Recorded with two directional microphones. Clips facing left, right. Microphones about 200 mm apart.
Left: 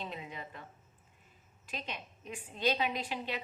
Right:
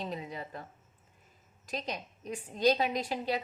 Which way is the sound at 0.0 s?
40° right (ahead or behind).